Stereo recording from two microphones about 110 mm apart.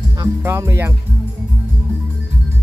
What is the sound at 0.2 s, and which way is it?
Speech, 25° right (ahead or behind).